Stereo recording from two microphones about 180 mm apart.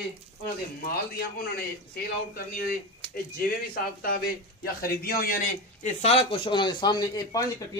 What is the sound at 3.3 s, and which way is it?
A man's voice, 55° left (ahead or behind).